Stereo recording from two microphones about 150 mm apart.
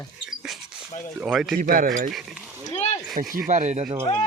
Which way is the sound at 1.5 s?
65° right (ahead or behind).